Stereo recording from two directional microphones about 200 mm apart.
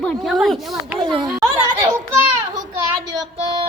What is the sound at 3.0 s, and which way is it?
Child singing, 20° right (ahead or behind).